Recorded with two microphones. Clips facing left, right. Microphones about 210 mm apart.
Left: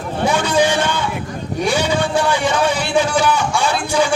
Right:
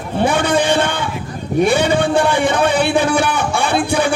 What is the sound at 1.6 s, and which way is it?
A man's voice, 55° right (ahead or behind).